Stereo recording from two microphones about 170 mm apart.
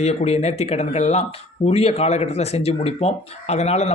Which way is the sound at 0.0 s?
40° left (ahead or behind).